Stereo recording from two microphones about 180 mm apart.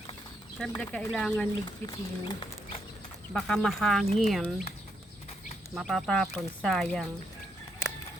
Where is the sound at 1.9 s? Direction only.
25° left (ahead or behind).